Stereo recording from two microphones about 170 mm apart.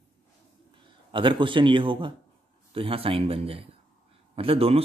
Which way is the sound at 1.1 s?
30° right (ahead or behind).